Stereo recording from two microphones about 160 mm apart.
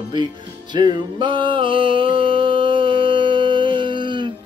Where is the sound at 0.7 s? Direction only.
25° right (ahead or behind).